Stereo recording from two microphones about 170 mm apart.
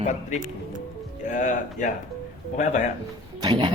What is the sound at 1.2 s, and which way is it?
Speech, 45° left (ahead or behind).